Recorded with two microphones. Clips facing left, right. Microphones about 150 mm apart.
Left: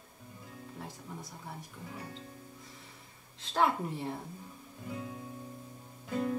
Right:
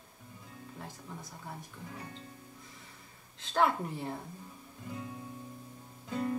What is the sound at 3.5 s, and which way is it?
Speech, 5° left (ahead or behind).